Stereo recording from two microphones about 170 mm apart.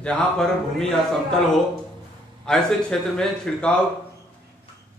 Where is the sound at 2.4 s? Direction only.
5° left (ahead or behind).